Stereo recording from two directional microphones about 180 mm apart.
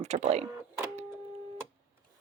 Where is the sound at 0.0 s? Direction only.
40° right (ahead or behind).